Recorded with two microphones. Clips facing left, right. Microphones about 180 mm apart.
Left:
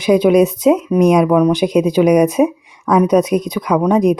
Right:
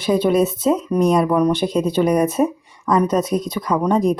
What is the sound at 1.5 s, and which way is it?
Speech, 15° left (ahead or behind).